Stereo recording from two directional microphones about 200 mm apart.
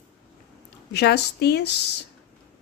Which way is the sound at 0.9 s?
55° left (ahead or behind).